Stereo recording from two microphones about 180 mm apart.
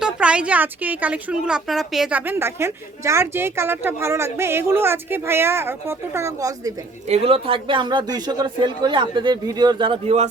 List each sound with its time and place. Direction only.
0.0 s speech: 5° right (ahead or behind)
7.1 s speech: 35° right (ahead or behind)